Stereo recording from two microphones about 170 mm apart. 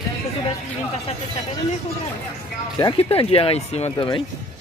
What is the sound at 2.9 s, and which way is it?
Speech, 35° left (ahead or behind).